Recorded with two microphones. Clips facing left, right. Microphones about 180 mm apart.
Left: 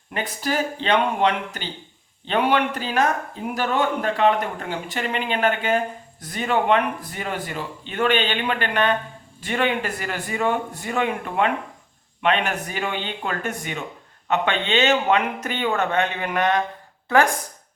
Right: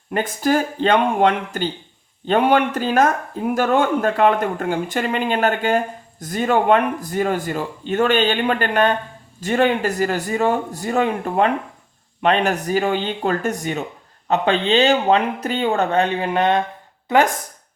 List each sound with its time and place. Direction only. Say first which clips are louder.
0.1 s speech: right 7 dB; 50° right (ahead or behind); by 17.3 s 20° right (ahead or behind)